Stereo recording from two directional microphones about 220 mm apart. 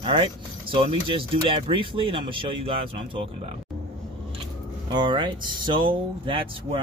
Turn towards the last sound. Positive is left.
turn(degrees=-25)  # may be behind; listen again after turning